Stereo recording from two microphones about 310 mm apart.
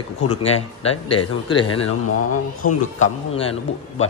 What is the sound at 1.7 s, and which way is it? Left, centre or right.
Speech, left.